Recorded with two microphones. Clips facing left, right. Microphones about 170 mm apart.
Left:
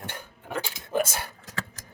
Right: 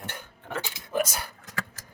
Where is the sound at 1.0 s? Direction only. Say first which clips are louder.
Right 1 dB; 25° left (ahead or behind).